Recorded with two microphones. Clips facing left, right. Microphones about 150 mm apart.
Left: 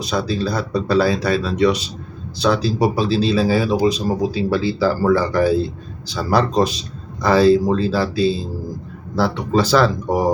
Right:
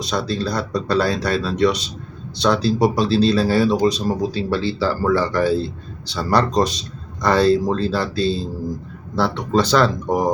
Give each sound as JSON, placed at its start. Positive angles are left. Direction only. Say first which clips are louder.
{"t": 0.0, "sound": "speech", "louder": "left 2 dB", "side_deg": 5}